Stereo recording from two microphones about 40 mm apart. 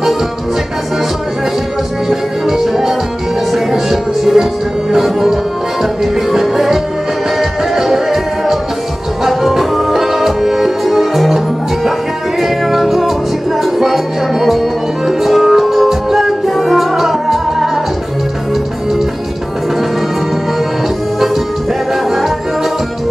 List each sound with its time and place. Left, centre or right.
2.0 s music: centre